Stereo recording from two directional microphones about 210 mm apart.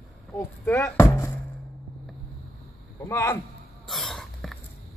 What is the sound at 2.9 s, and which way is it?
Speech, 15° left (ahead or behind).